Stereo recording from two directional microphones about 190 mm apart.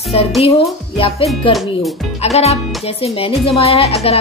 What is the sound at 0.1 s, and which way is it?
Speech, 30° left (ahead or behind).